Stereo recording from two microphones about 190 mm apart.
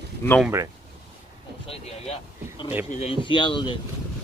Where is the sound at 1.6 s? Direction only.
30° left (ahead or behind).